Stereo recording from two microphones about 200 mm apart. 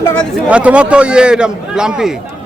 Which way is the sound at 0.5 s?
5° right (ahead or behind).